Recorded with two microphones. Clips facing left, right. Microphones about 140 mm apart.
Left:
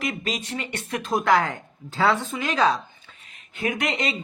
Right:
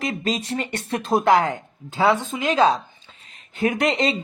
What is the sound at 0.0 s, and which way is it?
Speech, 30° right (ahead or behind).